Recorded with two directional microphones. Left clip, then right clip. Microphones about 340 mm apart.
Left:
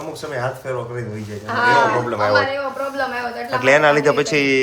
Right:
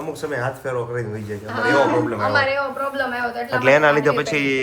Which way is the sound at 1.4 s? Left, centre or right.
Left.